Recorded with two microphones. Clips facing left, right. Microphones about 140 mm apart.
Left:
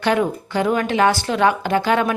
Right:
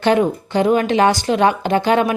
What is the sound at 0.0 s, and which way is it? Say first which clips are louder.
A woman's voice: right 4 dB; 25° right (ahead or behind).